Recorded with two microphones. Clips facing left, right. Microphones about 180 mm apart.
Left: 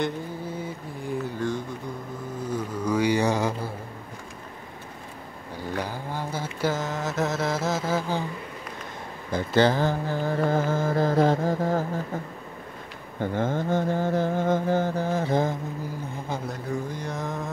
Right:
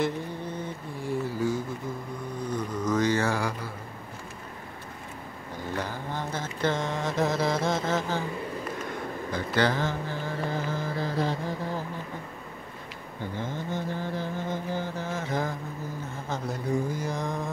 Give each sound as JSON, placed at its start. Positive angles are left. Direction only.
{"t": 0.0, "sound": "a sound", "side_deg": 5}
{"t": 2.5, "sound": "a sound", "side_deg": 10}
{"t": 5.8, "sound": "mantra", "side_deg": 10}
{"t": 9.3, "sound": "mantra", "side_deg": 30}
{"t": 13.2, "sound": "mantra", "side_deg": 50}
{"t": 16.9, "sound": "mantra", "side_deg": 0}